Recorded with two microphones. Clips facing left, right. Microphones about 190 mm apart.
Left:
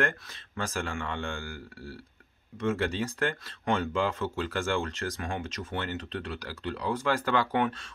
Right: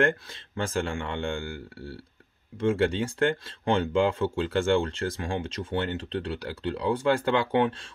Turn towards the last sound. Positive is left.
turn(degrees=-30)  # may be behind; listen again after turning